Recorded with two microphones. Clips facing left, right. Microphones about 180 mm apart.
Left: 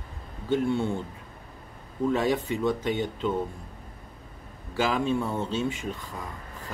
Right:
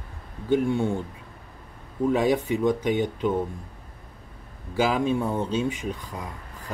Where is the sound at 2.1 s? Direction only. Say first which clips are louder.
Right 3 dB; 15° right (ahead or behind).